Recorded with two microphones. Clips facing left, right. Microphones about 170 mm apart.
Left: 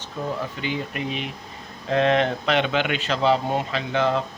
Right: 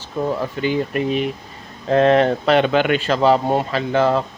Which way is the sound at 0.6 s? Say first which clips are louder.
Right 8 dB; 45° right (ahead or behind).